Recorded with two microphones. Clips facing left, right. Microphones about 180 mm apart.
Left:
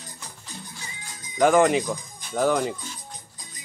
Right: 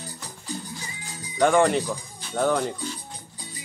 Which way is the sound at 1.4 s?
5° left (ahead or behind).